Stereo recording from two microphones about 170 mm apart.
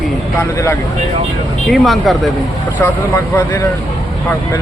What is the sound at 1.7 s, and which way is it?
Speech, centre (ahead or behind).